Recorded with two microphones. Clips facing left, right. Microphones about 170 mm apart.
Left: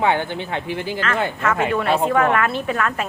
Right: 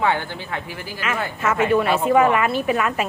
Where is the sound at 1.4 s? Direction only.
5° right (ahead or behind).